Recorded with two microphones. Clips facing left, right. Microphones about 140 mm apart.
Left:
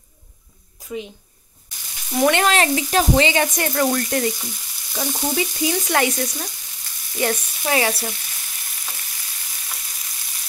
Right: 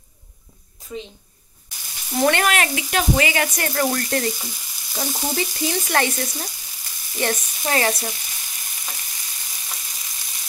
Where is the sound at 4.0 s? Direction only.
15° left (ahead or behind).